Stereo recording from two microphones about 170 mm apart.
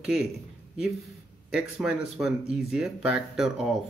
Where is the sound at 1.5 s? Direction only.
5° right (ahead or behind).